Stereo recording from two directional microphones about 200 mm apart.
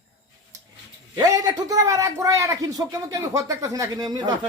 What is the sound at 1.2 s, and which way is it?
A man's voice, 20° right (ahead or behind).